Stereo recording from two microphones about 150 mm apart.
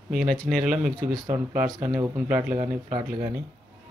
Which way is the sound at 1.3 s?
10° right (ahead or behind).